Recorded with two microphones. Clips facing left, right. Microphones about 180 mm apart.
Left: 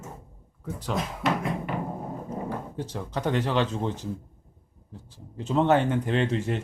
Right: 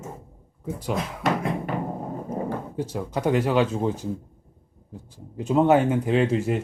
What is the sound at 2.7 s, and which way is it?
Speech, 10° right (ahead or behind).